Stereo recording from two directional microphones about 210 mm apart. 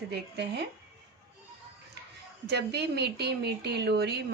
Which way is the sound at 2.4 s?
50° right (ahead or behind).